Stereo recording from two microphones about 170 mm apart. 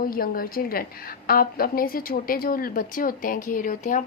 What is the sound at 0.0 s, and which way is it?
A woman's voice, 55° left (ahead or behind).